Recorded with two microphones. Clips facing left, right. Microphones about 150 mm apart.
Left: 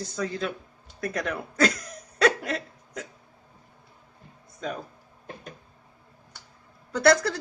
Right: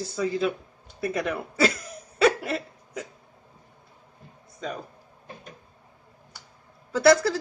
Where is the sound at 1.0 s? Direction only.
5° right (ahead or behind).